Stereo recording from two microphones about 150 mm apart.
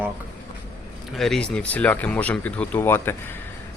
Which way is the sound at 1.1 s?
Centre (ahead or behind).